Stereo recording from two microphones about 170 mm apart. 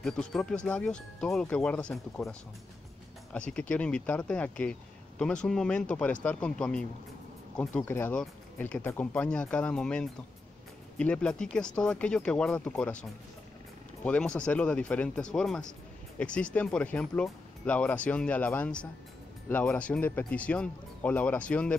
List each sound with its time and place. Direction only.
0.0 s speech: 5° left (ahead or behind)
3.3 s speech: 5° left (ahead or behind)
14.0 s speech: 5° left (ahead or behind)